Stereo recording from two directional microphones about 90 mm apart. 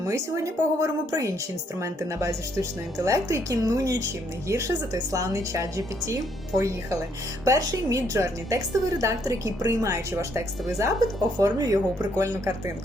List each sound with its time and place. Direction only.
0.1 s speech: 35° right (ahead or behind)